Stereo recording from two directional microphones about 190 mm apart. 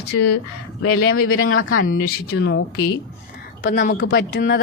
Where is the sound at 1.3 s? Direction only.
90° left.